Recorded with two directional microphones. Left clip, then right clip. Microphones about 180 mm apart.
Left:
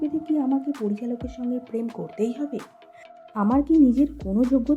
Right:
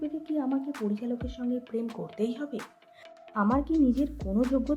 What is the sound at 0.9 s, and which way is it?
Speech, 30° left (ahead or behind).